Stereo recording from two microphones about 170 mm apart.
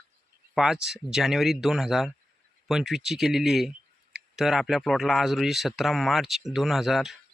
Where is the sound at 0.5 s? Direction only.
5° right (ahead or behind).